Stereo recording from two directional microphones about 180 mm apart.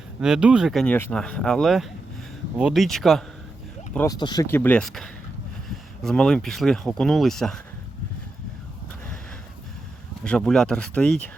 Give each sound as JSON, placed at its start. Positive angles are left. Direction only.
{"t": 0.2, "sound": "speech", "side_deg": -5}
{"t": 3.9, "sound": "speech", "side_deg": 20}
{"t": 4.4, "sound": "speech", "side_deg": 10}
{"t": 10.2, "sound": "speech", "side_deg": 5}